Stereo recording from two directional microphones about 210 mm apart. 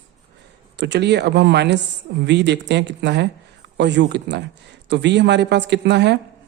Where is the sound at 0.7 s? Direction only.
55° right (ahead or behind).